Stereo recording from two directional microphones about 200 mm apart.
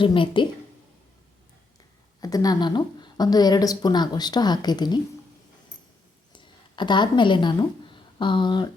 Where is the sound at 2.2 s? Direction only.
20° left (ahead or behind).